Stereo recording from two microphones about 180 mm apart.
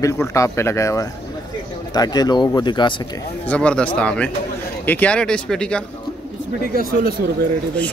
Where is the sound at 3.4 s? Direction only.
5° left (ahead or behind).